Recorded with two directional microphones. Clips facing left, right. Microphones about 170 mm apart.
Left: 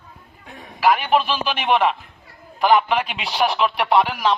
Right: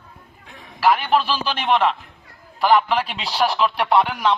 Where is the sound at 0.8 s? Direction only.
10° left (ahead or behind).